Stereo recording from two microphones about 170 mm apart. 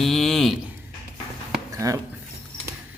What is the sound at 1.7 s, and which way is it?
Speech, 20° right (ahead or behind).